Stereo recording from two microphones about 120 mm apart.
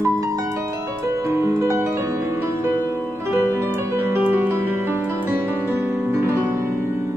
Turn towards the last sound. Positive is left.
turn(degrees=-20)  # may be behind; listen again after turning